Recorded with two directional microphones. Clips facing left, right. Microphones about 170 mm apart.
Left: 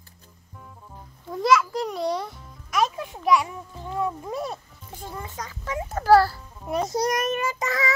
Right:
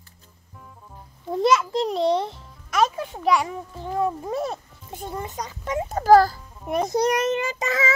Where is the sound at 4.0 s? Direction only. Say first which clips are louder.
Right 3 dB; 30° right (ahead or behind).